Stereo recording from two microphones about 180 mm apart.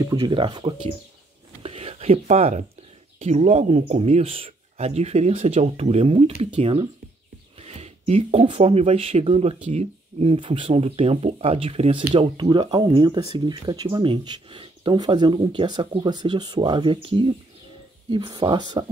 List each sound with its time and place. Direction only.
0.0 s speech: 20° right (ahead or behind)
1.6 s a sound: 35° right (ahead or behind)
3.2 s speech: 35° right (ahead or behind)